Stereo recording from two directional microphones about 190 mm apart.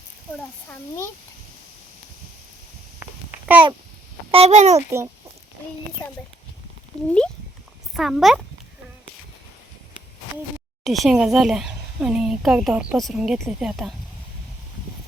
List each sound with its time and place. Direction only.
0.7 s a child's voice: 15° left (ahead or behind)
3.0 s a sound: 10° right (ahead or behind)
4.3 s a child's voice: 30° right (ahead or behind)
6.9 s speech: 5° left (ahead or behind)
10.8 s speech: centre (ahead or behind)